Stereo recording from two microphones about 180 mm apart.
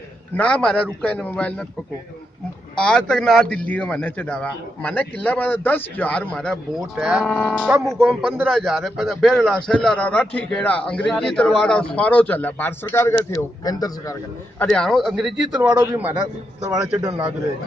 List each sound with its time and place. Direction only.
0.4 s a man's voice: 5° left (ahead or behind)
2.7 s a man's voice: 5° left (ahead or behind)
7.2 s a man's voice: 10° left (ahead or behind)
7.6 s a man's voice: 5° right (ahead or behind); by 14.1 s 20° left (ahead or behind)
14.6 s a man's voice: 5° left (ahead or behind); by 17.1 s 15° right (ahead or behind)